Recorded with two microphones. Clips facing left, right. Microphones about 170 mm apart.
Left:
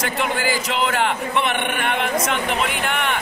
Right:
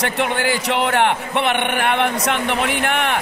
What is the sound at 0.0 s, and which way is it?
A man's voice, 65° right (ahead or behind).